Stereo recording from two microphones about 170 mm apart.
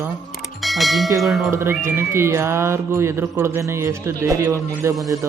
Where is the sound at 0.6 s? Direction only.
Centre (ahead or behind).